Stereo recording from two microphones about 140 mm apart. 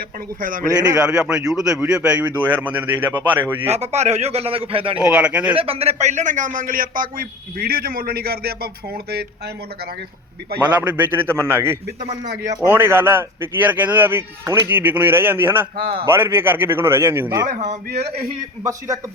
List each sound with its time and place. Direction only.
0.9 s a man's voice: 5° right (ahead or behind)
3.7 s a man's voice: 50° right (ahead or behind)
4.9 s a man's voice: 10° right (ahead or behind)
5.5 s a man's voice: 45° right (ahead or behind); by 9.1 s 90° right
10.6 s a man's voice: 10° right (ahead or behind)
17.6 s a man's voice: 60° right (ahead or behind)